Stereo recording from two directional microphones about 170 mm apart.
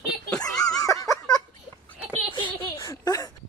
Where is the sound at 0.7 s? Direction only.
20° left (ahead or behind).